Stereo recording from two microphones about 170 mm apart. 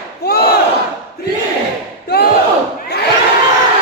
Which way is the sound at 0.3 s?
65° left (ahead or behind).